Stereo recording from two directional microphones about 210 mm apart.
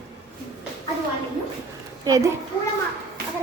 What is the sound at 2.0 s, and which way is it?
Speech, 15° right (ahead or behind).